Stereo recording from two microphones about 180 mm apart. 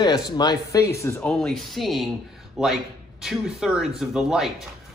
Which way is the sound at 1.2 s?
Centre (ahead or behind).